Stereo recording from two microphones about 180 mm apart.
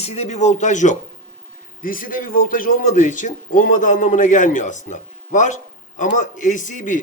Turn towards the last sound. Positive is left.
turn(degrees=45)  # may be behind; listen again after turning